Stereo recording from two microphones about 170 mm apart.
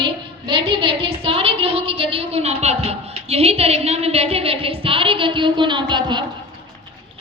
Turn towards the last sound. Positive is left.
turn(degrees=-25)  # may be behind; listen again after turning